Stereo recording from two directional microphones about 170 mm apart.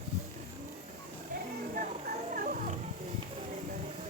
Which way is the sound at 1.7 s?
50° right (ahead or behind).